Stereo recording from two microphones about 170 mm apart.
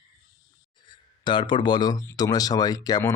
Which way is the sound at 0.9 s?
25° left (ahead or behind).